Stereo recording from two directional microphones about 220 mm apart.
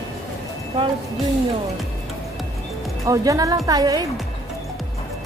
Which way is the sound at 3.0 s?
15° right (ahead or behind).